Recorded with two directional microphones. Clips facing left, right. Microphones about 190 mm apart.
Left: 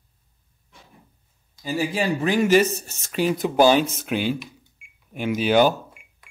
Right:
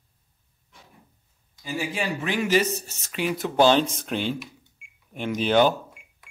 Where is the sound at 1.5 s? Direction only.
35° left (ahead or behind).